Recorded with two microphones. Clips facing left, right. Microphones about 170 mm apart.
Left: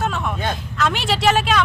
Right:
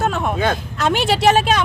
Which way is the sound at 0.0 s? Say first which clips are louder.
Right 4 dB; 45° right (ahead or behind).